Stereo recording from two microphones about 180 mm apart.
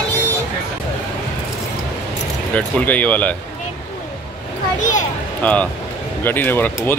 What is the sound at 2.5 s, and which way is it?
Speech, 10° left (ahead or behind).